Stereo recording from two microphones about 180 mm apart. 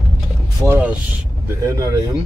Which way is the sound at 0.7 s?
10° right (ahead or behind).